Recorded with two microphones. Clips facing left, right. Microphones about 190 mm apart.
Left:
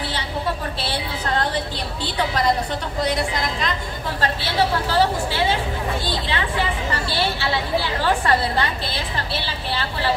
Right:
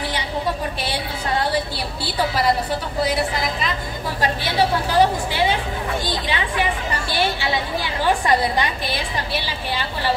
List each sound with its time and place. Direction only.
0.7 s a sound: 10° right (ahead or behind)
2.0 s a woman's voice: 5° right (ahead or behind)
4.9 s a woman's voice: 15° right (ahead or behind)